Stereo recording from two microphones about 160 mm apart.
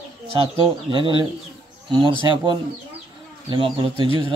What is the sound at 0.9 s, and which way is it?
Speech, 30° right (ahead or behind).